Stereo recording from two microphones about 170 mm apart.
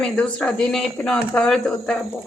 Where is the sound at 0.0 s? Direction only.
5° left (ahead or behind).